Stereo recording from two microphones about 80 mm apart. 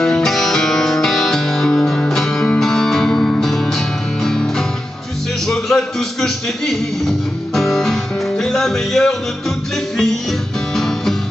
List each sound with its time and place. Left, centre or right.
0.0 s music: centre
10.7 s music: centre